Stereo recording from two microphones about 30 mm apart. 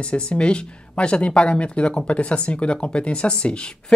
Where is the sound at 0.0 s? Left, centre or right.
Left.